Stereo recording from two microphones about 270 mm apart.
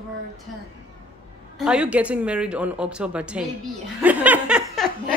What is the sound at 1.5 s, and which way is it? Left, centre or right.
A woman's voice, centre.